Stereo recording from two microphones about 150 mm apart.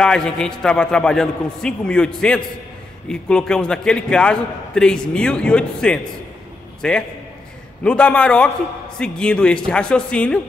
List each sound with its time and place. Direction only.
0.0 s a man's voice: 5° left (ahead or behind)